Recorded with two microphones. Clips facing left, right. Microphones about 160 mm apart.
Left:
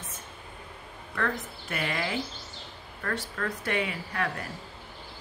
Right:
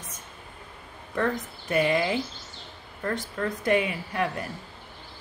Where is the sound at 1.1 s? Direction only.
20° right (ahead or behind).